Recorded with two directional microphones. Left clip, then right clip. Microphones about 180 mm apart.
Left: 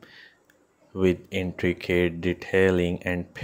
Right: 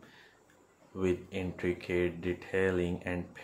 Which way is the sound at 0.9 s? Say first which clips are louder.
Left 9 dB; 40° left (ahead or behind).